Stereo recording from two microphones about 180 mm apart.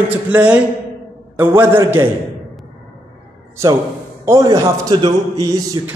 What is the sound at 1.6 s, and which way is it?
Speech, 10° right (ahead or behind).